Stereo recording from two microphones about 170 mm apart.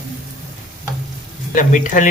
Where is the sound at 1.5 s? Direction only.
50° left (ahead or behind).